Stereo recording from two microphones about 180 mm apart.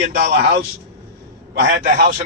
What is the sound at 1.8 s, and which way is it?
Speech, 45° right (ahead or behind).